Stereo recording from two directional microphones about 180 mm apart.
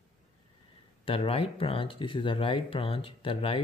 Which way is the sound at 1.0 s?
30° left (ahead or behind).